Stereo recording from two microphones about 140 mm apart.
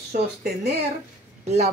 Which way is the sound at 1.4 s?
50° right (ahead or behind).